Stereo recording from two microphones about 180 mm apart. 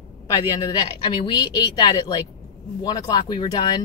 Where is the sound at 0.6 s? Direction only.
25° left (ahead or behind).